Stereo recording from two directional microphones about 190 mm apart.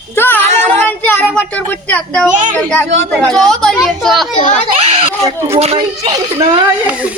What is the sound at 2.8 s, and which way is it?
Speech, 75° right (ahead or behind).